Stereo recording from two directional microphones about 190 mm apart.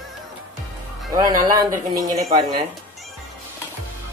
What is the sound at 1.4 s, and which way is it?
Speech, 20° right (ahead or behind).